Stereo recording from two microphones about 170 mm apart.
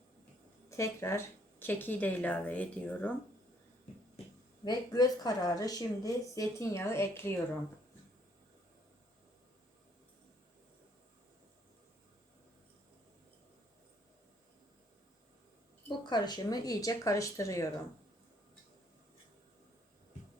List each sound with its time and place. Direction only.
0.8 s speech: 15° left (ahead or behind)
4.6 s speech: 20° left (ahead or behind)
15.9 s speech: 25° left (ahead or behind)